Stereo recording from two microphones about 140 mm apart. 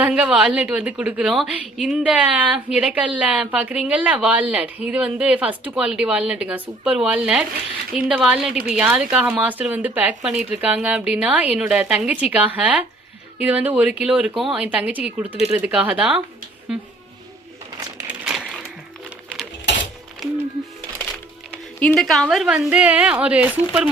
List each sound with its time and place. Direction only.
0.0 s a woman's voice: 10° right (ahead or behind)
18.1 s a sound: 5° right (ahead or behind)
21.5 s a woman's voice: 10° left (ahead or behind); by 23.5 s 10° right (ahead or behind)